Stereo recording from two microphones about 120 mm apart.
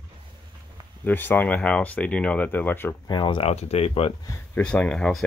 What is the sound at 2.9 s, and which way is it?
Speech, 40° left (ahead or behind).